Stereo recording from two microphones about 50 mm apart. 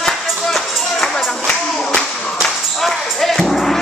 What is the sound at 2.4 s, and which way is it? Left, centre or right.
Music, centre.